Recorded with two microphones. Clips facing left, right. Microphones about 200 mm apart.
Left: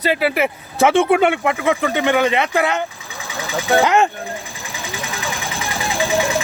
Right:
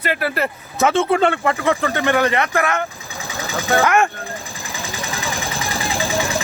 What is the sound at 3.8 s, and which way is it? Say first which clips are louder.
Speech: even; 20° left (ahead or behind).